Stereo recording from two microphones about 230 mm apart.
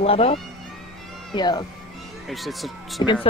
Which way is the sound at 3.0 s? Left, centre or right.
Left.